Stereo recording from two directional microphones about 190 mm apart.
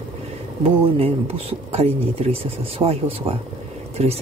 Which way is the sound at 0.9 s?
30° right (ahead or behind).